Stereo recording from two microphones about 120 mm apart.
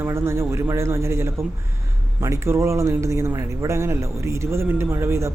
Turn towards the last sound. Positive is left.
turn(degrees=-20)  # may be behind; listen again after turning